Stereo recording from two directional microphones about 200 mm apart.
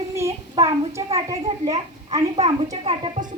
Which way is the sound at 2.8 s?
35° right (ahead or behind).